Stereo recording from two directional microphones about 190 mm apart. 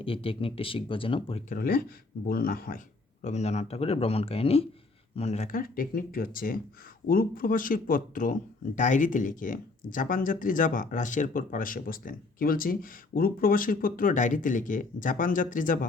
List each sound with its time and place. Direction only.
0.0 s speech: 30° left (ahead or behind)
1.5 s speech: 50° left (ahead or behind)